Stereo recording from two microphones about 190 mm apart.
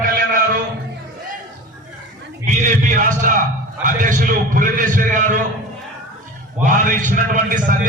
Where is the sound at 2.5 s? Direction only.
40° right (ahead or behind).